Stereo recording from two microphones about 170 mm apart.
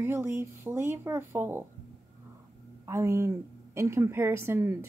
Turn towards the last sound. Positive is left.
turn(degrees=-15)  # may be behind; listen again after turning